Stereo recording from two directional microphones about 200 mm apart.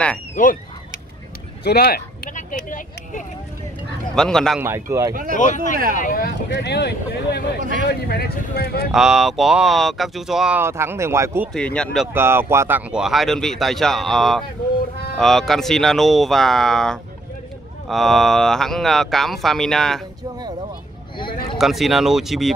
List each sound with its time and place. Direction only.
0.4 s a sound: 45° left (ahead or behind)
1.6 s vehicle: 50° left (ahead or behind)
4.1 s speech: 5° left (ahead or behind)
4.6 s speech: 15° right (ahead or behind)
5.4 s speech: 40° left (ahead or behind)
8.9 s speech: centre (ahead or behind)
11.5 s speech: 5° left (ahead or behind)
12.1 s speech: 10° right (ahead or behind)
21.5 s speech: centre (ahead or behind)